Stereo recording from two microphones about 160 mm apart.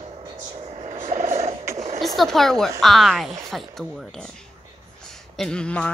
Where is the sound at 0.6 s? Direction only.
40° right (ahead or behind).